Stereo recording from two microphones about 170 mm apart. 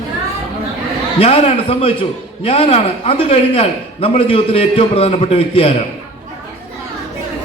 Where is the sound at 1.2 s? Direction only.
35° left (ahead or behind).